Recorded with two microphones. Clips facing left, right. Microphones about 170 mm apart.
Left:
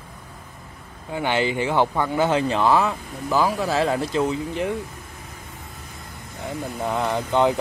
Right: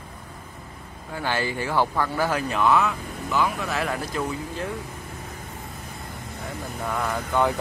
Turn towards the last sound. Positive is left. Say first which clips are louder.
# left 4 dB
turn(degrees=20)  # may be behind; listen again after turning